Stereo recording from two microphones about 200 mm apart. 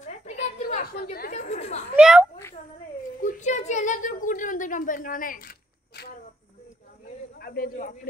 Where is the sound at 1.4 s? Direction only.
35° left (ahead or behind).